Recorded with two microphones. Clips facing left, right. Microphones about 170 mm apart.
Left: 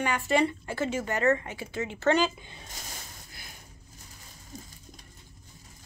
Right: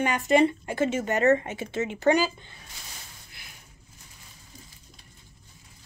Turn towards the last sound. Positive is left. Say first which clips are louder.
# left 7 dB
turn(degrees=45)  # may be behind; listen again after turning